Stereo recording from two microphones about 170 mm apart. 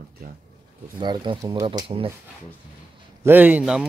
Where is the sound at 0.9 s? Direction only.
25° right (ahead or behind).